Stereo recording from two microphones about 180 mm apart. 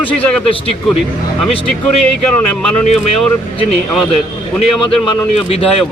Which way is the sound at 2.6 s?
5° left (ahead or behind).